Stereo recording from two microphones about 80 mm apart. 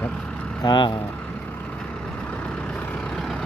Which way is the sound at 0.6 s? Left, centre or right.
Left.